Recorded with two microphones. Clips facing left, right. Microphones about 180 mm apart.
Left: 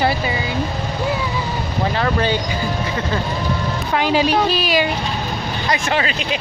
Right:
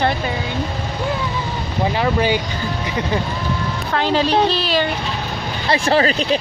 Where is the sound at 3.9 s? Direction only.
15° left (ahead or behind).